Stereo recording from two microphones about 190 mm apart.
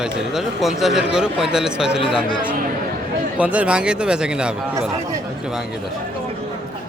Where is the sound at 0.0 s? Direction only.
5° right (ahead or behind).